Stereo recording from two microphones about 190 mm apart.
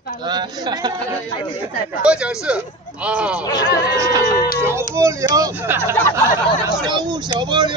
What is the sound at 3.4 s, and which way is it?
Speech, 20° left (ahead or behind).